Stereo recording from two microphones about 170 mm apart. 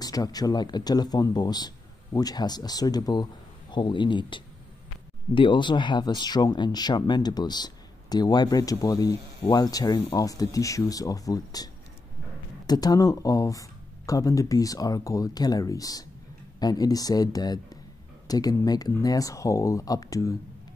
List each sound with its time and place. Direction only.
0.0 s speech: 20° left (ahead or behind)